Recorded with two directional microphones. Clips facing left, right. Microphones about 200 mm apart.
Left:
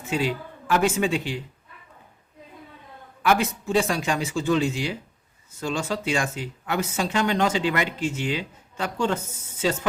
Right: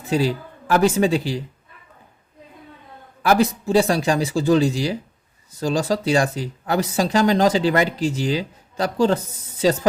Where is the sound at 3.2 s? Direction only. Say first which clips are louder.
Right 5 dB; 35° right (ahead or behind).